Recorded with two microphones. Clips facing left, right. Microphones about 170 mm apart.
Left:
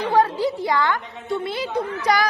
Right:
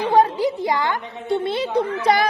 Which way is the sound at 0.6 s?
20° right (ahead or behind).